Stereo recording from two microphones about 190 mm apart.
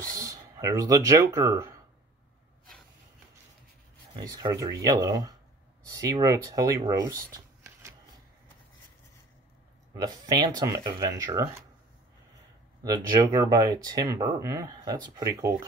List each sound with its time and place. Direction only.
0.1 s speech: 15° right (ahead or behind)
4.2 s speech: 20° right (ahead or behind)
9.9 s speech: 20° right (ahead or behind)
12.8 s speech: 20° right (ahead or behind)